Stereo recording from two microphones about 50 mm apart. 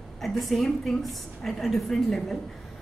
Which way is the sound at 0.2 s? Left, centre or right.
Centre.